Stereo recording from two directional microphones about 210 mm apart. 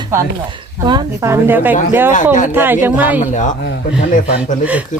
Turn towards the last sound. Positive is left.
turn(degrees=-5)  # may be behind; listen again after turning